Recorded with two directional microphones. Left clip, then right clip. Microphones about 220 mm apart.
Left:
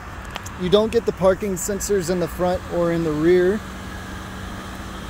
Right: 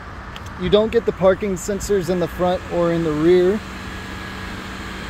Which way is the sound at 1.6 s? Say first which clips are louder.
Right 1 dB; 20° left (ahead or behind).